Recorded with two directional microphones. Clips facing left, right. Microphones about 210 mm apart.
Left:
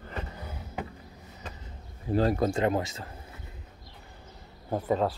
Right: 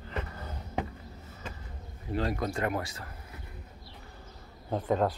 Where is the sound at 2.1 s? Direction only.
35° left (ahead or behind).